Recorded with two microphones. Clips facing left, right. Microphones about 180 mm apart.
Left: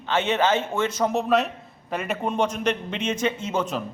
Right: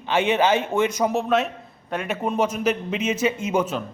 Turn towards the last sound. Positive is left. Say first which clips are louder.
# right 3 dB
turn(degrees=-10)  # may be behind; listen again after turning